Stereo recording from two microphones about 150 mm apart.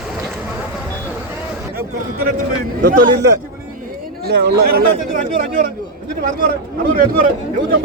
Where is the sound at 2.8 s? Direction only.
70° right (ahead or behind).